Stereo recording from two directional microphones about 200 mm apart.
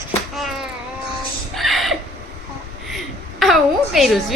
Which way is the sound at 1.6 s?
Centre (ahead or behind).